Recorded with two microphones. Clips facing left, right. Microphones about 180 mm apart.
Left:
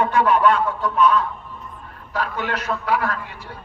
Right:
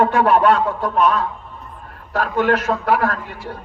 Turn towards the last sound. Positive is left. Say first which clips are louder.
# right 3 dB
turn(degrees=-45)  # may be behind; listen again after turning